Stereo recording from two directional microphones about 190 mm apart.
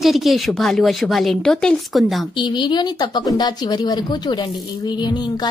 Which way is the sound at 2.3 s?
25° left (ahead or behind).